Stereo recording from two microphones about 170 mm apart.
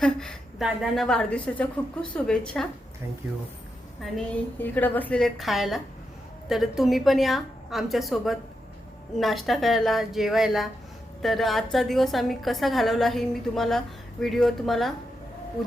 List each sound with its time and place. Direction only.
0.0 s a woman's voice: 5° left (ahead or behind)
4.5 s a woman's voice: 10° left (ahead or behind)